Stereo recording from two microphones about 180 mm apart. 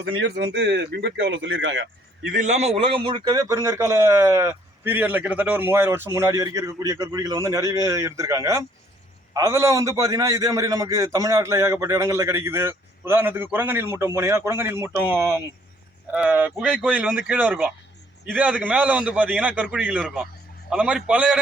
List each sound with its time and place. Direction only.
0.0 s a man's voice: 80° right
2.3 s a man's voice: 40° right (ahead or behind); by 21.3 s 5° right (ahead or behind)